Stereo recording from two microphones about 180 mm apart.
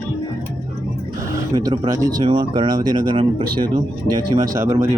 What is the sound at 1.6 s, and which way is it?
Speech, 20° right (ahead or behind).